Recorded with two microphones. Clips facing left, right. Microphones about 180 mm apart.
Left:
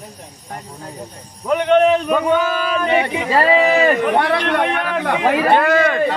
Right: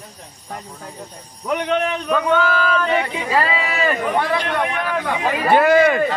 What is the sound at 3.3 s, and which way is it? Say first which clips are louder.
Speech: left 7 dB; 45° left (ahead or behind).